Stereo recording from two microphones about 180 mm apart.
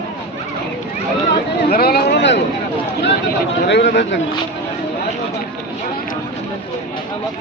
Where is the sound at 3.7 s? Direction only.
70° left (ahead or behind).